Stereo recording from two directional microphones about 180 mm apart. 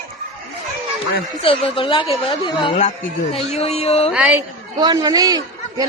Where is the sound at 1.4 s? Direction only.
30° left (ahead or behind).